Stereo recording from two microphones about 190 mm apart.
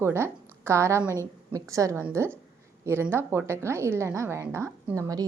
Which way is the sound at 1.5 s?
15° right (ahead or behind).